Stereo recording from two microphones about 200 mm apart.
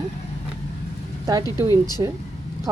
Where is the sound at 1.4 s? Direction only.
20° left (ahead or behind).